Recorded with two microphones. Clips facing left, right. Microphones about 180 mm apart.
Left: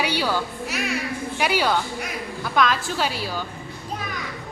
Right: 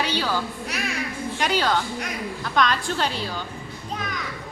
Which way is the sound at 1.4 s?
10° left (ahead or behind).